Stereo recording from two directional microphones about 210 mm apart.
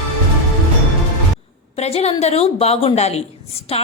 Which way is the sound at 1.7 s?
30° left (ahead or behind).